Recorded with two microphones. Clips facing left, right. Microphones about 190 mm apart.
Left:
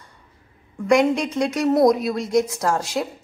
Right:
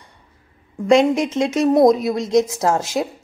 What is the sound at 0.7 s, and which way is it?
A woman's voice, 20° right (ahead or behind).